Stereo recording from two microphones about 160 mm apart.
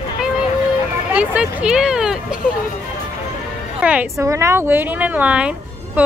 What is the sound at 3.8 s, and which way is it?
A woman's voice, 10° right (ahead or behind).